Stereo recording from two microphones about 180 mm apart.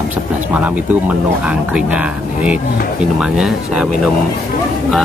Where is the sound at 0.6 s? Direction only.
5° right (ahead or behind).